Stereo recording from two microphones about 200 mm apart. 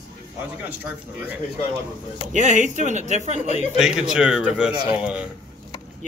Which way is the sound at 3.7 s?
5° right (ahead or behind).